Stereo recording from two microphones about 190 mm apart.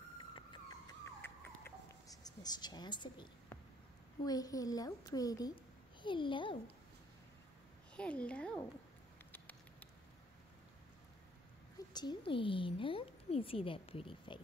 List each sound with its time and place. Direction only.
0.2 s a sound: 25° left (ahead or behind)
1.2 s a sound: 10° left (ahead or behind)
4.2 s a woman's voice: 20° left (ahead or behind)
7.9 s a woman's voice: 5° left (ahead or behind)
9.3 s patter: 10° left (ahead or behind)
11.9 s a woman's voice: 25° left (ahead or behind)